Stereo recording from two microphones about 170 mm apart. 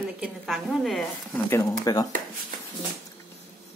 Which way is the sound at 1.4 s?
20° left (ahead or behind).